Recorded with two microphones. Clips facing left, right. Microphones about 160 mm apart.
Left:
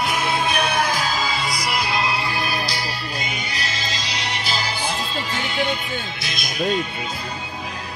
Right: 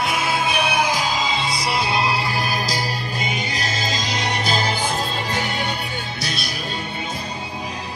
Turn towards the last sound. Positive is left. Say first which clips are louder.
# right 3 dB
turn(degrees=-35)  # may be behind; listen again after turning